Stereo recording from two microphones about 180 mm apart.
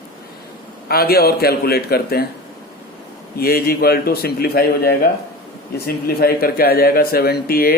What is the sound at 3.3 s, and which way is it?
Speech, 55° left (ahead or behind).